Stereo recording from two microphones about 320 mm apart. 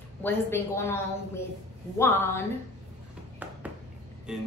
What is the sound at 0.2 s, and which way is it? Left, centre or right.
A woman's voice, centre.